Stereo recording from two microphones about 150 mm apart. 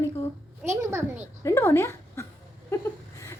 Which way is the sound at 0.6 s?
Centre (ahead or behind).